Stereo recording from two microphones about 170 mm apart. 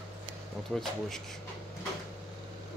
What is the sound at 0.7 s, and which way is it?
Speech, centre (ahead or behind).